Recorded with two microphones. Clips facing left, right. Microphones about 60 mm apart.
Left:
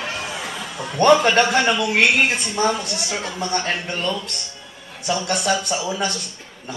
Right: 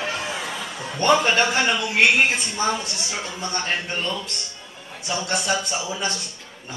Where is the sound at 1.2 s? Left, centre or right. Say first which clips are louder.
Left 3 dB; left.